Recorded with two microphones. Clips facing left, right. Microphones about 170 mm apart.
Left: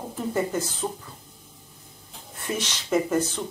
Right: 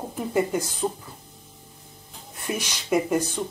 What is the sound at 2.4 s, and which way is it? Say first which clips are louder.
Speech: even; 10° right (ahead or behind).